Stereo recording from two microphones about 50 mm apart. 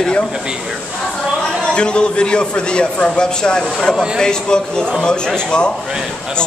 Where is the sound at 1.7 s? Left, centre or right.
Centre.